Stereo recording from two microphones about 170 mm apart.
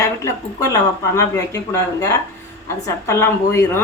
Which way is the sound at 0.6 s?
20° left (ahead or behind).